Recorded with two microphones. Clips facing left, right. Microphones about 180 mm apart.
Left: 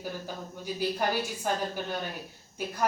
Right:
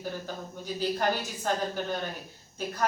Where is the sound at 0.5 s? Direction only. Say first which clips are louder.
Even; 10° left (ahead or behind).